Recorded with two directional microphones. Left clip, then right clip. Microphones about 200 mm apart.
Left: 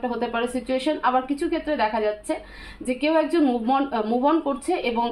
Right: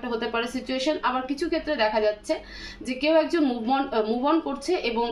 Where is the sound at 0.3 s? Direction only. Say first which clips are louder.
Left 3 dB; 30° left (ahead or behind).